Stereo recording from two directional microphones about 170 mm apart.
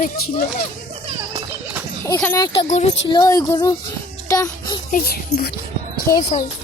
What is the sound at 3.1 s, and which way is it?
A child's voice, 20° left (ahead or behind).